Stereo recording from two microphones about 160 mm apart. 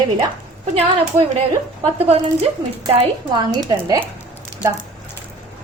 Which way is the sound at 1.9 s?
40° right (ahead or behind).